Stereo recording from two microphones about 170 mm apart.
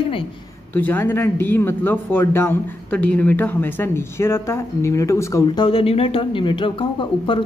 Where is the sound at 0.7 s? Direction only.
10° left (ahead or behind).